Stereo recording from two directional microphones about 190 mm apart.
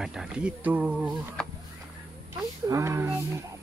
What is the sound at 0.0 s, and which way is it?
Speech, 5° right (ahead or behind).